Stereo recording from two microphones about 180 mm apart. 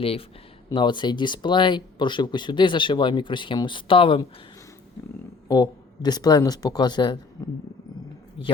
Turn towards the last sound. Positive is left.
turn(degrees=25)  # may be behind; listen again after turning